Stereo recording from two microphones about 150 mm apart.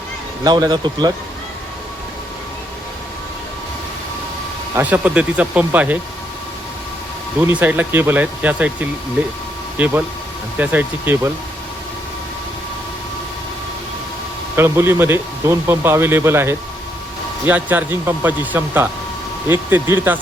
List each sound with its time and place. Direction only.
0.4 s speech: 30° right (ahead or behind)
4.7 s speech: 10° right (ahead or behind)
7.4 s speech: 10° right (ahead or behind)
14.5 s speech: 15° right (ahead or behind)